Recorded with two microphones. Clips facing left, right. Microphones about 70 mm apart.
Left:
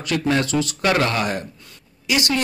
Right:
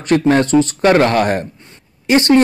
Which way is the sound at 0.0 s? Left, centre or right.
Right.